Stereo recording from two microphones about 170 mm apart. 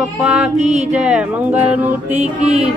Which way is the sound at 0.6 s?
40° right (ahead or behind).